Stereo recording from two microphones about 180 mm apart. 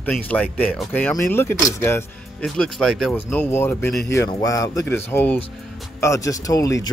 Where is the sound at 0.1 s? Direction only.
5° left (ahead or behind).